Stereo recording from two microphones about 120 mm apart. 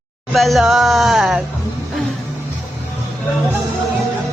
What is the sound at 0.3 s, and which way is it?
Speech, centre (ahead or behind).